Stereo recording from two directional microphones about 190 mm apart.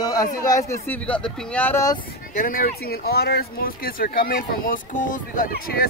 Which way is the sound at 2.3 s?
45° left (ahead or behind).